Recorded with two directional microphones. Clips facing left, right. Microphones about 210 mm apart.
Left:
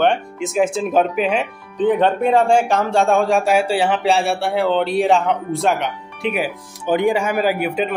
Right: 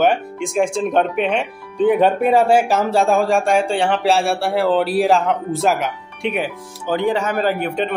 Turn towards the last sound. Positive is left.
turn(degrees=5)  # may be behind; listen again after turning